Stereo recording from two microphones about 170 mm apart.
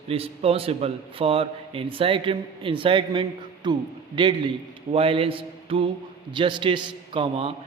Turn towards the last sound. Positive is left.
turn(degrees=-30)  # may be behind; listen again after turning